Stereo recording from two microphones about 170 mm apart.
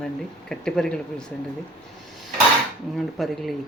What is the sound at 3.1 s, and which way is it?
Speech, centre (ahead or behind).